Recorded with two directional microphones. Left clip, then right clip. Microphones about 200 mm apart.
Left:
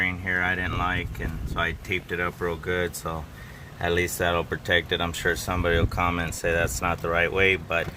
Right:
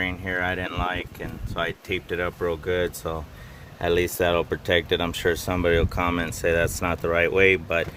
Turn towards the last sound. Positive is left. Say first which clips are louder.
# right 3 dB
turn(degrees=-50)  # may be behind; listen again after turning